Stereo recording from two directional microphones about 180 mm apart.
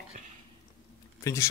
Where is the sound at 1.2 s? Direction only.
15° left (ahead or behind).